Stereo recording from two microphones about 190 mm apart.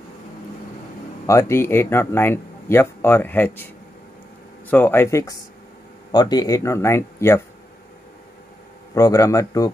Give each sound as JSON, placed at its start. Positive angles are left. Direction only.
{"t": 1.2, "sound": "speech", "side_deg": 15}
{"t": 4.6, "sound": "speech", "side_deg": 10}
{"t": 8.9, "sound": "speech", "side_deg": 20}